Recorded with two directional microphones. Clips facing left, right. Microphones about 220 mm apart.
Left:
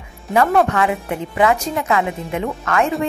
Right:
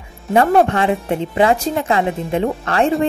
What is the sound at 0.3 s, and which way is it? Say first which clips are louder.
Speech: right 2 dB; 30° right (ahead or behind).